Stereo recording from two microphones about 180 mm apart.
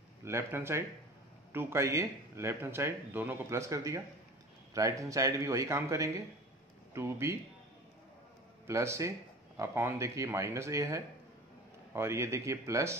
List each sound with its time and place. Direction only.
0.2 s speech: 15° right (ahead or behind)
8.6 s speech: 15° right (ahead or behind)